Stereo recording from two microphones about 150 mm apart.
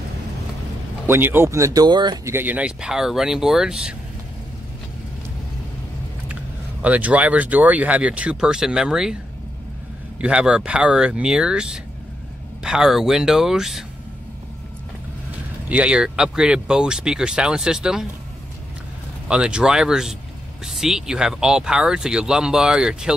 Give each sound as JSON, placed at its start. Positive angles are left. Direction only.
{"t": 1.0, "sound": "speech", "side_deg": -15}
{"t": 2.3, "sound": "speech", "side_deg": -10}
{"t": 6.8, "sound": "speech", "side_deg": -10}
{"t": 10.2, "sound": "speech", "side_deg": -5}
{"t": 15.7, "sound": "speech", "side_deg": -5}
{"t": 19.2, "sound": "speech", "side_deg": -5}